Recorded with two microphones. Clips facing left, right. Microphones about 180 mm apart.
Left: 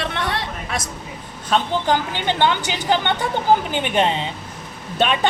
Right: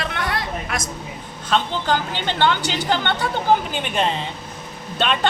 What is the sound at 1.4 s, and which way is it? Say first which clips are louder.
A woman's voice: left 2 dB; 10° left (ahead or behind).